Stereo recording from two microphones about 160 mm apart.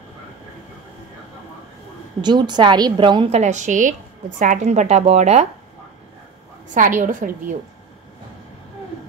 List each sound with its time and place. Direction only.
2.2 s a woman's voice: 25° right (ahead or behind)
3.3 s a woman's voice: 45° right (ahead or behind)
6.7 s a woman's voice: 55° right (ahead or behind)